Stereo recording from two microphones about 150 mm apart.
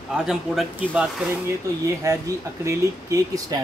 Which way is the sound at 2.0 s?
20° right (ahead or behind).